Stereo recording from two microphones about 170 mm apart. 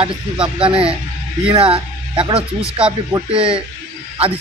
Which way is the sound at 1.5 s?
30° right (ahead or behind).